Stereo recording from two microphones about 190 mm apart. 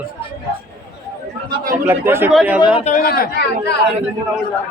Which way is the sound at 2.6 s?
30° left (ahead or behind).